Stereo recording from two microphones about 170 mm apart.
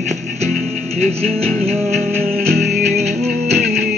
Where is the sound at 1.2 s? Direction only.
5° left (ahead or behind).